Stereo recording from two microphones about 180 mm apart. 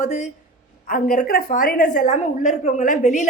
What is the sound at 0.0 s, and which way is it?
A man's voice, 40° left (ahead or behind).